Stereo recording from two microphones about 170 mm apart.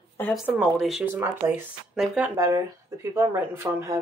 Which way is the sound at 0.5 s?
Centre (ahead or behind).